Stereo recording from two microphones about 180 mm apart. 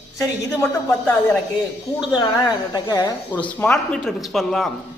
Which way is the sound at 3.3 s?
10° left (ahead or behind).